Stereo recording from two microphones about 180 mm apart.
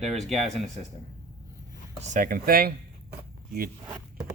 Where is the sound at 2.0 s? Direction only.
50° right (ahead or behind).